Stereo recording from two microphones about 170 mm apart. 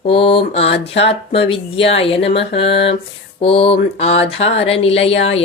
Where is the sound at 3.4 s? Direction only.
35° left (ahead or behind).